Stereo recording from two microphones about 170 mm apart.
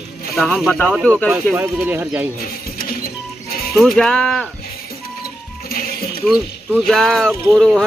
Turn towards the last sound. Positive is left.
turn(degrees=5)  # may be behind; listen again after turning